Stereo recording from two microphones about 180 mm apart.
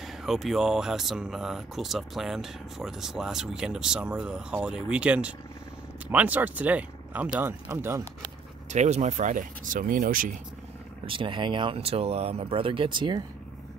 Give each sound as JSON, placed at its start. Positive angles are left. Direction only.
{"t": 0.0, "sound": "speech", "side_deg": 0}
{"t": 8.6, "sound": "speech", "side_deg": -40}
{"t": 11.1, "sound": "speech", "side_deg": -30}